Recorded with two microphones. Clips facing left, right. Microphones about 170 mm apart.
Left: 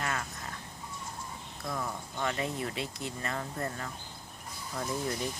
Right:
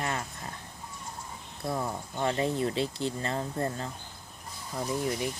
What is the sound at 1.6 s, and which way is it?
Speech, 30° right (ahead or behind).